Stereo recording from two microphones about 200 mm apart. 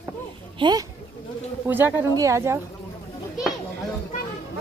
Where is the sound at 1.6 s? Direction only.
10° right (ahead or behind).